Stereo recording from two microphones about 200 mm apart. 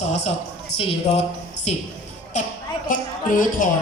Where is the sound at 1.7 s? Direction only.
30° left (ahead or behind).